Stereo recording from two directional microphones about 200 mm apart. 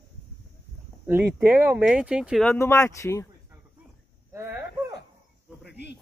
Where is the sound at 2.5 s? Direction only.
15° left (ahead or behind).